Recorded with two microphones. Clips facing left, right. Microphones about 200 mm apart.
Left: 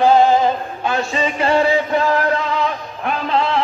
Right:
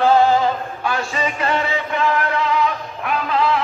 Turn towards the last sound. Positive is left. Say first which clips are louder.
# left 1 dB
turn(degrees=30)  # may be behind; listen again after turning